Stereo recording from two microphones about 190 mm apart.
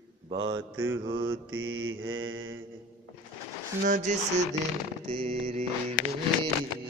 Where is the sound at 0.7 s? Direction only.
10° right (ahead or behind).